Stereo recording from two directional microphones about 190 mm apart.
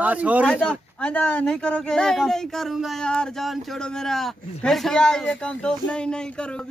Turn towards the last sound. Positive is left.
turn(degrees=5)  # may be behind; listen again after turning